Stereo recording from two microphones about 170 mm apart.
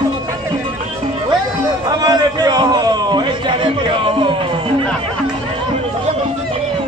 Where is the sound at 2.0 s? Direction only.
25° right (ahead or behind).